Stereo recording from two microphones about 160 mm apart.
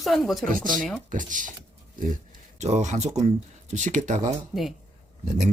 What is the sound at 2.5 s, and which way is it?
Speech, 45° right (ahead or behind).